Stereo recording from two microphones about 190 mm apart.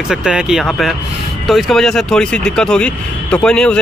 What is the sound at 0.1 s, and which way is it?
A man's voice, 5° right (ahead or behind).